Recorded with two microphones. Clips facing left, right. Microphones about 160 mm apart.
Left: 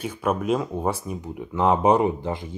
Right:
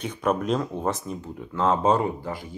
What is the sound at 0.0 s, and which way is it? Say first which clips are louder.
Speech: even; 5° left (ahead or behind).